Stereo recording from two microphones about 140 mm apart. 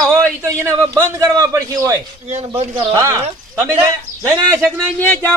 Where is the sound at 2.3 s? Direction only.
50° right (ahead or behind).